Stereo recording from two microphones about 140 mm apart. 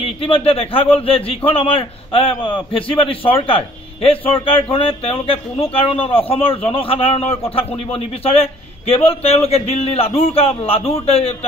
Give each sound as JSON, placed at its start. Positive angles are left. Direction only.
{"t": 0.0, "sound": "a man's voice", "side_deg": 45}